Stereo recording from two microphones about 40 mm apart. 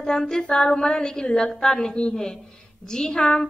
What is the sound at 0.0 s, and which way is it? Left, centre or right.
A woman's voice, centre.